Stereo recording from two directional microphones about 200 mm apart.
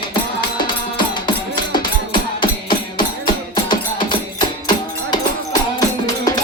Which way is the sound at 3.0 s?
20° left (ahead or behind).